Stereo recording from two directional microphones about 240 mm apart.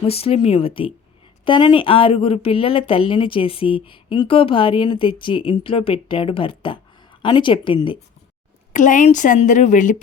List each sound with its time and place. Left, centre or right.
0.0 s a woman's voice: left
8.7 s speech: left